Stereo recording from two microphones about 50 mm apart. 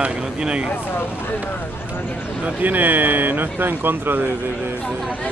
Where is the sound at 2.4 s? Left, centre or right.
Right.